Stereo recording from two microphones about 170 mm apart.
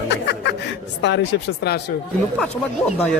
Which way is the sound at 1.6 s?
75° left (ahead or behind).